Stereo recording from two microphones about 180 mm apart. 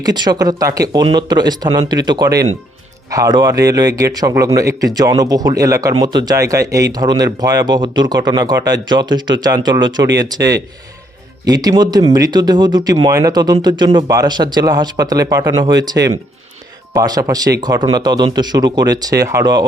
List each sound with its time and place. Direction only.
0.0 s speech: 25° right (ahead or behind)
11.4 s speech: 20° right (ahead or behind)